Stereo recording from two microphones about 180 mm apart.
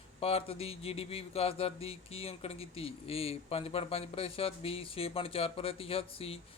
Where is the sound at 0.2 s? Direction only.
30° left (ahead or behind).